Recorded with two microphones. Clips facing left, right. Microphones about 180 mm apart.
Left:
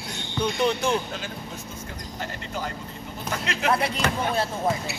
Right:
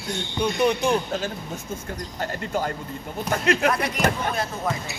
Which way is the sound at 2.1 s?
50° right (ahead or behind).